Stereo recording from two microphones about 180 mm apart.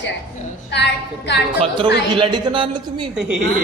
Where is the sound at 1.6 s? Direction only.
25° right (ahead or behind).